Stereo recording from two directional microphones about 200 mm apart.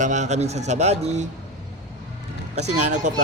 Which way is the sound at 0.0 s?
35° right (ahead or behind).